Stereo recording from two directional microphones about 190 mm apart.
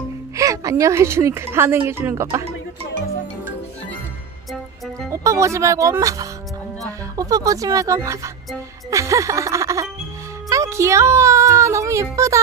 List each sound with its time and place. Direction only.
0.4 s a woman's voice: 15° right (ahead or behind)
5.1 s a woman's voice: 15° right (ahead or behind)